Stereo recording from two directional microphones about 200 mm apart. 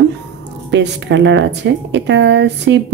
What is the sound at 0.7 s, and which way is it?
Speech, 60° right (ahead or behind).